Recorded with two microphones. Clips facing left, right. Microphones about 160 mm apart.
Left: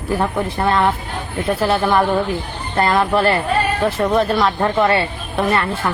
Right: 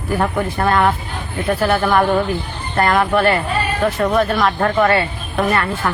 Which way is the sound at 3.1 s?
30° left (ahead or behind).